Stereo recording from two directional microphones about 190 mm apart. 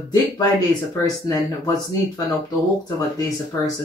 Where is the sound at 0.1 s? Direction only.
20° left (ahead or behind).